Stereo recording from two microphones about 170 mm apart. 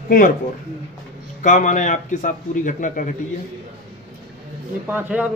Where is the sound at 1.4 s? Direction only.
45° left (ahead or behind).